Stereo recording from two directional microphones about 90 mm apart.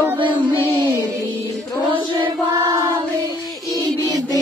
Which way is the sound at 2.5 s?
45° right (ahead or behind).